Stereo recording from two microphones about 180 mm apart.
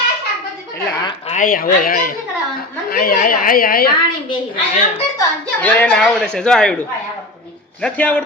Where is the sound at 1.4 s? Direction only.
50° left (ahead or behind).